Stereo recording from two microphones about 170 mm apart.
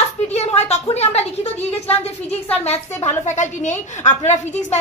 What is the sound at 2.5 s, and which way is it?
A woman's voice, 35° left (ahead or behind).